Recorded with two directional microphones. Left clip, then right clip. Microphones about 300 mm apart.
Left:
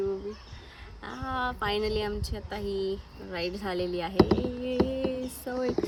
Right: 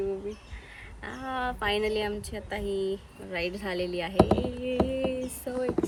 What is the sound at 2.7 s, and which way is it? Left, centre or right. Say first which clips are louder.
Speech: right 1 dB; centre.